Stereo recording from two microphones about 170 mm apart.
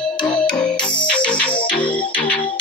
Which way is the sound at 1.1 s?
5° left (ahead or behind).